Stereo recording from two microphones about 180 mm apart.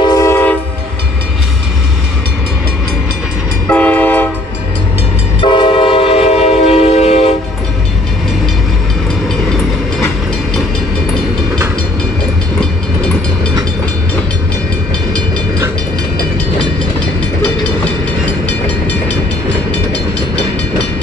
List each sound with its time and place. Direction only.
0.0 s train: 20° left (ahead or behind)
3.6 s train: 10° left (ahead or behind)
5.4 s train: 25° left (ahead or behind)